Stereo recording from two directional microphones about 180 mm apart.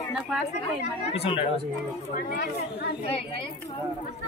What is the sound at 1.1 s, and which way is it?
Speech, 30° left (ahead or behind).